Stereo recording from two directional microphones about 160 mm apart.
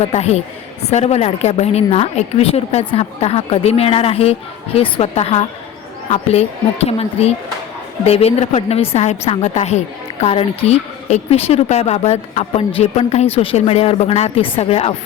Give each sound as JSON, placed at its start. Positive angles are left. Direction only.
{"t": 0.0, "sound": "a woman's voice", "side_deg": 40}